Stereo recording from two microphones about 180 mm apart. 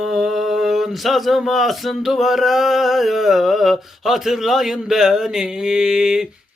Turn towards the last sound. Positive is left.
turn(degrees=-5)  # may be behind; listen again after turning